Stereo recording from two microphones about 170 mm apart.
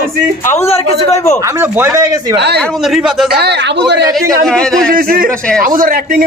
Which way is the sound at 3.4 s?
80° right.